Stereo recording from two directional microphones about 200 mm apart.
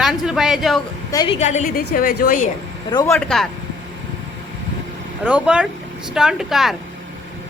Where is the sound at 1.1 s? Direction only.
20° left (ahead or behind).